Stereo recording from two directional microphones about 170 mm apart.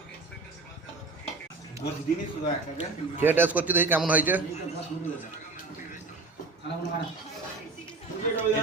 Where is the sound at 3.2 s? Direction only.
10° right (ahead or behind).